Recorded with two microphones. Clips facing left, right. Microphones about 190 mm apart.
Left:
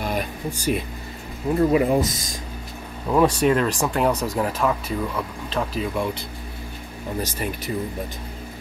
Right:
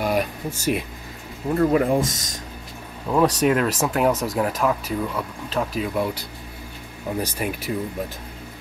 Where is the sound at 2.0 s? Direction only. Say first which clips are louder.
Left 1 dB; 45° right (ahead or behind).